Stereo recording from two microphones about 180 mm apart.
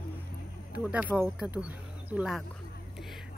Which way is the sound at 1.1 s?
10° right (ahead or behind).